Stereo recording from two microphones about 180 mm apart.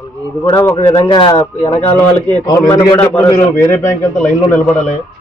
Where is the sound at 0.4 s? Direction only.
20° left (ahead or behind).